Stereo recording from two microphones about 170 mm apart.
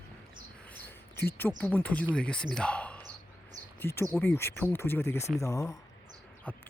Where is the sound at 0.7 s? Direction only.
10° left (ahead or behind).